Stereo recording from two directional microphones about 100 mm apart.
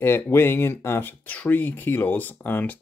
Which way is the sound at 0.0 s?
25° left (ahead or behind).